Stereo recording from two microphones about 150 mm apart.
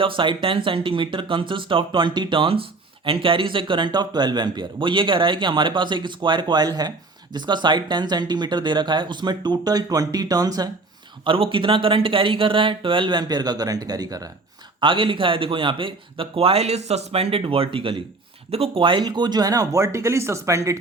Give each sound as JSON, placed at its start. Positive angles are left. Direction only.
{"t": 0.0, "sound": "speech", "side_deg": -35}